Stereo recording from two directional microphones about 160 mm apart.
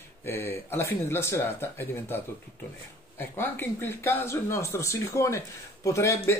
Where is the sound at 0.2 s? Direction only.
15° left (ahead or behind).